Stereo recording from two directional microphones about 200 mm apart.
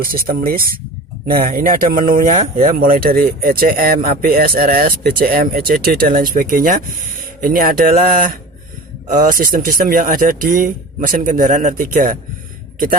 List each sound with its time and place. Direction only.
0.0 s speech: 45° right (ahead or behind)